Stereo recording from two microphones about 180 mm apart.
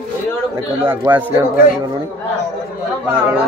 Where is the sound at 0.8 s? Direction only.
10° right (ahead or behind).